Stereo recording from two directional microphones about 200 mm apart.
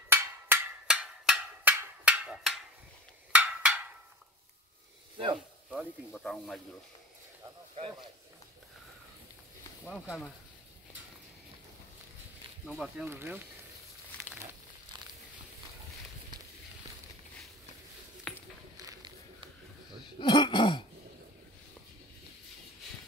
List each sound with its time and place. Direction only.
0.1 s percussion: 10° right (ahead or behind)
5.1 s snake: 25° right (ahead or behind)
5.7 s speech: centre (ahead or behind)
9.8 s speech: centre (ahead or behind)
12.6 s speech: centre (ahead or behind)
13.1 s speech: 10° right (ahead or behind)
18.3 s a sound: 5° left (ahead or behind)
18.8 s a sound: 20° right (ahead or behind)
20.2 s speech: 25° left (ahead or behind)